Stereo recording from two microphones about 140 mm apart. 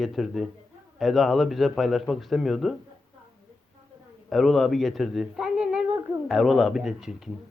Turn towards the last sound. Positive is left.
turn(degrees=0)  # may be behind; listen again after turning